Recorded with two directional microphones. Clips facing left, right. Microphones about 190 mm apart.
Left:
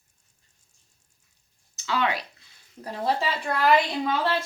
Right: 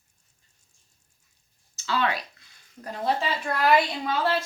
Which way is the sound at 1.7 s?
20° left (ahead or behind).